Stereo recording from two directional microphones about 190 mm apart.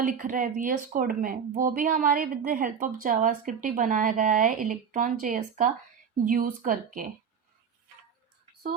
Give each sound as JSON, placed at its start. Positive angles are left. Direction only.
{"t": 0.0, "sound": "speech", "side_deg": -45}